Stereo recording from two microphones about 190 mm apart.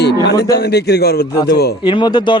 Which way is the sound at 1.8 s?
25° left (ahead or behind).